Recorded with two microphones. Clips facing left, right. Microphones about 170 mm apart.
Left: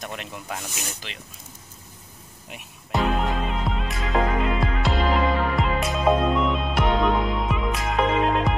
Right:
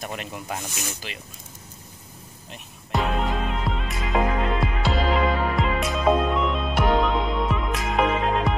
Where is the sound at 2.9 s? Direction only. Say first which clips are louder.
Left 1 dB; centre (ahead or behind).